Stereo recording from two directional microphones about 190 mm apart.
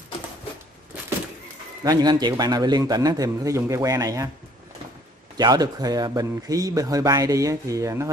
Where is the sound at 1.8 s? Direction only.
20° right (ahead or behind).